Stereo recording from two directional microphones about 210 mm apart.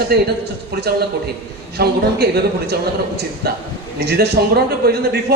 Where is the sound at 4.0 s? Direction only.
50° right (ahead or behind).